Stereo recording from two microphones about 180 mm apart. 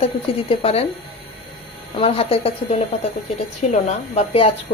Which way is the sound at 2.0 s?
35° left (ahead or behind).